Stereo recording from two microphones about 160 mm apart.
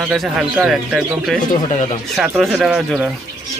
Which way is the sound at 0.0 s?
10° right (ahead or behind).